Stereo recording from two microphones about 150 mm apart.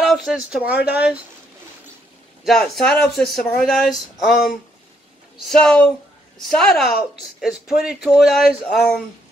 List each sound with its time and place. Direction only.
0.0 s speech: centre (ahead or behind)
2.4 s speech: centre (ahead or behind)